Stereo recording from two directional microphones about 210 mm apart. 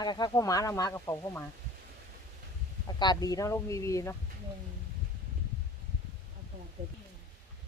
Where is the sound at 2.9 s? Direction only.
20° left (ahead or behind).